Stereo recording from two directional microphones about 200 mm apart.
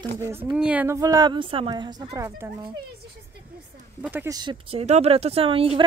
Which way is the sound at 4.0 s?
10° right (ahead or behind).